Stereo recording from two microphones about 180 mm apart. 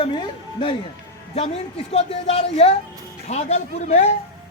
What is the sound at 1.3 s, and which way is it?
Speech, 35° left (ahead or behind).